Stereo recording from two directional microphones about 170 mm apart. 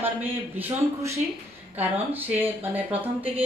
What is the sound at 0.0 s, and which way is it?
A woman's voice, 10° right (ahead or behind).